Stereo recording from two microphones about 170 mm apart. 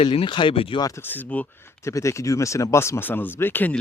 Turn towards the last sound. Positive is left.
turn(degrees=10)  # may be behind; listen again after turning